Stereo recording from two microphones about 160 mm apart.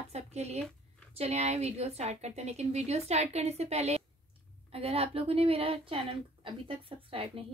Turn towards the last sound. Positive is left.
turn(degrees=-35)  # may be behind; listen again after turning